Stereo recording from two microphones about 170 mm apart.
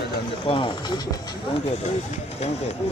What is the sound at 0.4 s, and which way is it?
Speech, 30° left (ahead or behind).